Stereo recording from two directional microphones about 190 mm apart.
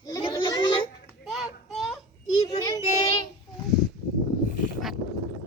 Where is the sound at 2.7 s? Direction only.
20° left (ahead or behind).